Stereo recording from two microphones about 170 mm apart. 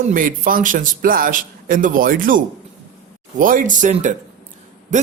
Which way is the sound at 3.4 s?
50° right (ahead or behind).